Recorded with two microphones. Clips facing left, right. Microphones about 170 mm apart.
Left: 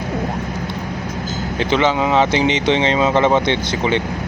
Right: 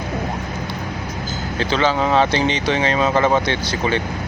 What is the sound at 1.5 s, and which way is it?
Speech, 20° left (ahead or behind).